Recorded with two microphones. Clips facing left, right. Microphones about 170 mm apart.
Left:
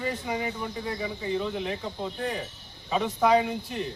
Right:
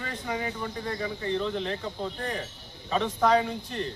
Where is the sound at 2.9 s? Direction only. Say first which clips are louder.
Left 1 dB; 10° left (ahead or behind).